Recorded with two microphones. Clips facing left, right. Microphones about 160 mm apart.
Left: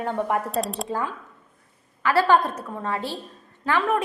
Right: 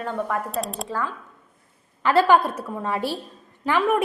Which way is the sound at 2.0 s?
25° right (ahead or behind).